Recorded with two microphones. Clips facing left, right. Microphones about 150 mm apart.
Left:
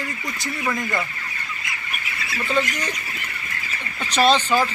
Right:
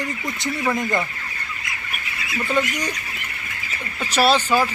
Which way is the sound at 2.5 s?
10° right (ahead or behind).